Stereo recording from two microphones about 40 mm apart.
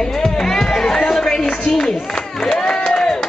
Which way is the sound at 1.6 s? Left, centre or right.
Centre.